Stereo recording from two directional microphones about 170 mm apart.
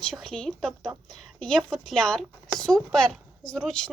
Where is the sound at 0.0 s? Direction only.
Centre (ahead or behind).